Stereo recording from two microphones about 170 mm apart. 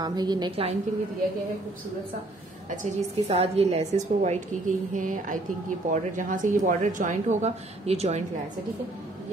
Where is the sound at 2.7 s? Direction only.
40° right (ahead or behind).